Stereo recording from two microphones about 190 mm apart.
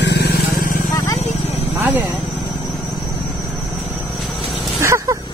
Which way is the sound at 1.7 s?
10° right (ahead or behind).